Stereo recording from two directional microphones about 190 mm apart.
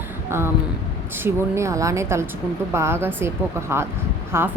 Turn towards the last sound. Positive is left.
turn(degrees=-15)  # may be behind; listen again after turning